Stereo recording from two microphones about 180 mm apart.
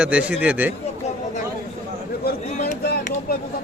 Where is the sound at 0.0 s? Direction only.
5° right (ahead or behind).